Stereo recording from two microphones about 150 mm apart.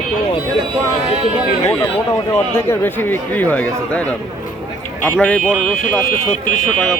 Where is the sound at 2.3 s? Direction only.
15° left (ahead or behind).